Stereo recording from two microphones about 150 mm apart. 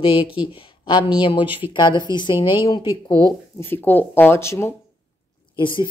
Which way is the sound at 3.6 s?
15° left (ahead or behind).